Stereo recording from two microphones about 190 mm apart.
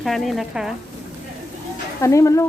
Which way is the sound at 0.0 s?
Centre (ahead or behind).